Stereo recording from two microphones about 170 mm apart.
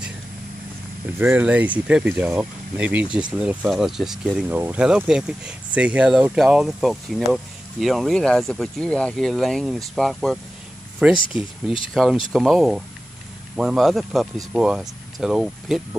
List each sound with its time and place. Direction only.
1.2 s speech: 10° right (ahead or behind)